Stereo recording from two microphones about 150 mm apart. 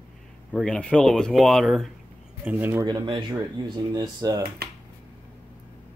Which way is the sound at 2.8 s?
30° right (ahead or behind).